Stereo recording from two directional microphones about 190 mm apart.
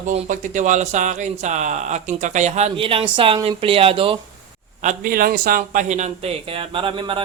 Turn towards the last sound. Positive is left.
turn(degrees=-25)  # may be behind; listen again after turning